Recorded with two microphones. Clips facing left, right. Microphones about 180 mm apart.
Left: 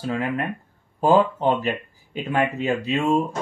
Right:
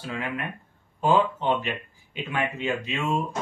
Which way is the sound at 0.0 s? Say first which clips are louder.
Left 7 dB; 40° left (ahead or behind).